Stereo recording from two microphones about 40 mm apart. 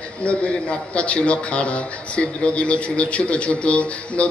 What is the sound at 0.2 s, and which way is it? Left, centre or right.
A man's voice, left.